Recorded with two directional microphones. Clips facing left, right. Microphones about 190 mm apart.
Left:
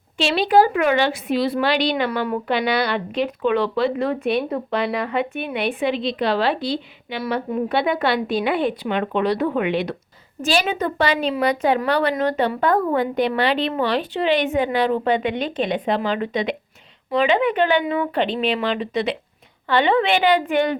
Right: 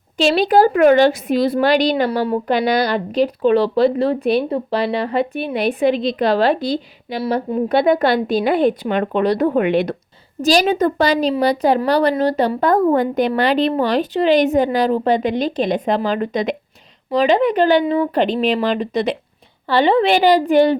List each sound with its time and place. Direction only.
0.2 s a woman's voice: 40° right (ahead or behind)